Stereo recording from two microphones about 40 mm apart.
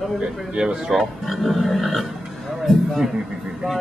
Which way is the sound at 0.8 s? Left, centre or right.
Centre.